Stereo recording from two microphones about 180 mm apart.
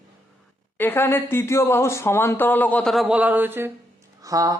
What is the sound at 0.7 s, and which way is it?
Speech, 10° left (ahead or behind).